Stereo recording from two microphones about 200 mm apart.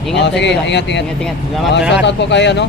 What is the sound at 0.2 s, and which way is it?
Speech, 60° left (ahead or behind).